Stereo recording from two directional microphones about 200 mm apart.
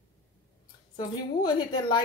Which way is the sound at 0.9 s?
20° left (ahead or behind).